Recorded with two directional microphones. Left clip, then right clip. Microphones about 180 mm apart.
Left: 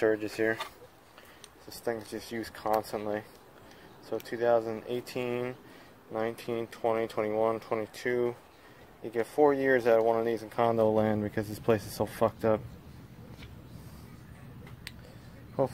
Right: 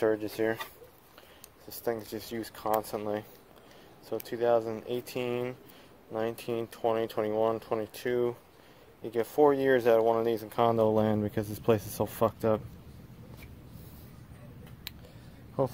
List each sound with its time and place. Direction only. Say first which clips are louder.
0.0 s speech: left 1 dB; 10° right (ahead or behind)
1.9 s speech: right 1 dB; 20° right (ahead or behind)
4.3 s speech: even; 15° right (ahead or behind)